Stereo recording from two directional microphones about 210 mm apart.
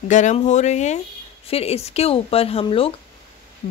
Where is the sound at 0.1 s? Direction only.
35° left (ahead or behind).